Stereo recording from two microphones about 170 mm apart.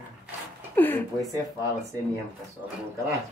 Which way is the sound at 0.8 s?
10° left (ahead or behind).